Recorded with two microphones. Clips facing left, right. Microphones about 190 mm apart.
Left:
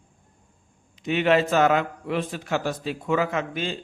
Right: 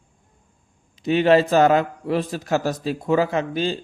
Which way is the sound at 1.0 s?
35° right (ahead or behind).